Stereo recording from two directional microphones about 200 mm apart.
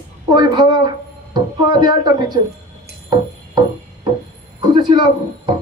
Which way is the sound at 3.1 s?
25° right (ahead or behind).